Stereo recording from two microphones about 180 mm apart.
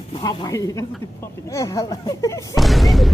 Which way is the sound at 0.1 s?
25° left (ahead or behind).